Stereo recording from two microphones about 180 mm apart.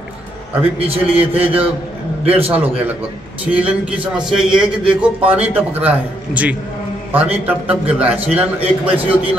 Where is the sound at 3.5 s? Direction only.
5° right (ahead or behind).